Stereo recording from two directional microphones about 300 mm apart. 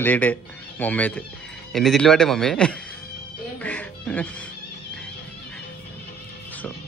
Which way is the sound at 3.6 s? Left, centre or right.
Centre.